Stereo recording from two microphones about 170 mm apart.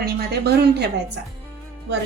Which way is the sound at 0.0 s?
70° right (ahead or behind).